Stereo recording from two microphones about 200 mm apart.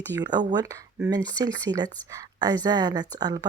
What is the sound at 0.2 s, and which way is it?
Speech, 20° right (ahead or behind).